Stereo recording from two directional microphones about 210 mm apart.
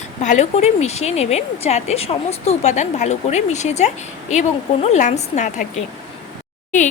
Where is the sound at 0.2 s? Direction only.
35° left (ahead or behind).